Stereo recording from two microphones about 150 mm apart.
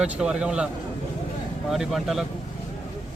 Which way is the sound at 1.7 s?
Centre (ahead or behind).